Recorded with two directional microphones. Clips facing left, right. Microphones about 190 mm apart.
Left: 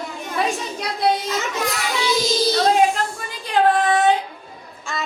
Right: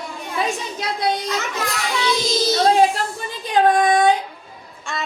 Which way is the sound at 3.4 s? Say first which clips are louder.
Right 1 dB; 15° right (ahead or behind).